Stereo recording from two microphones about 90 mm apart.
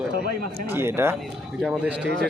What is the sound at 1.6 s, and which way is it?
Speech, 10° right (ahead or behind).